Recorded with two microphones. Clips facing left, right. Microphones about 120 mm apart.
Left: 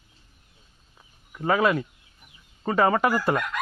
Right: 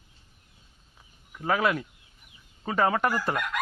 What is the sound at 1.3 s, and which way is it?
Speech, centre (ahead or behind).